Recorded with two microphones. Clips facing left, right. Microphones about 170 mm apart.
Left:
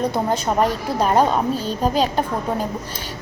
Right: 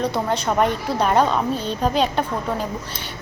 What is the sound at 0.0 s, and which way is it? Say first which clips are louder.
A woman's voice: left 1 dB; 45° left (ahead or behind).